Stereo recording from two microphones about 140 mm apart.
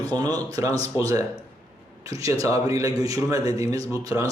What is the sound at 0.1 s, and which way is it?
Speech, 30° right (ahead or behind).